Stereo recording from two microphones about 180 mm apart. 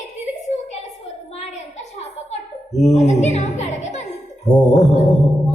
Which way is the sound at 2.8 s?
40° left (ahead or behind).